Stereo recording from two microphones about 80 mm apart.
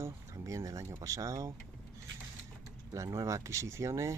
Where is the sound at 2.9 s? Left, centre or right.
Right.